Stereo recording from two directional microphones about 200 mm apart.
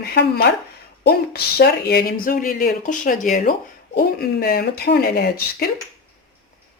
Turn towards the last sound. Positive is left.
turn(degrees=50)  # may be behind; listen again after turning